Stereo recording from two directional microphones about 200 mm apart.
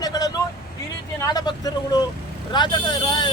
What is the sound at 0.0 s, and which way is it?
Vehicle, 20° left (ahead or behind).